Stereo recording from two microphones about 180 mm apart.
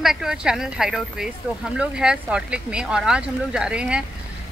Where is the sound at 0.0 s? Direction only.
Centre (ahead or behind).